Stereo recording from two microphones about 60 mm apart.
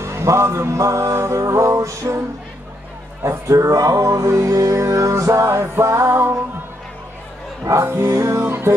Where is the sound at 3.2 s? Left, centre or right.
Right.